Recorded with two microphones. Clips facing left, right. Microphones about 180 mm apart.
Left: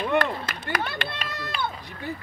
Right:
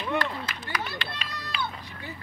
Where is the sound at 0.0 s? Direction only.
55° left (ahead or behind).